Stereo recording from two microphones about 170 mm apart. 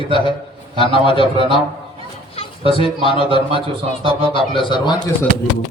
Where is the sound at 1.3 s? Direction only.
30° right (ahead or behind).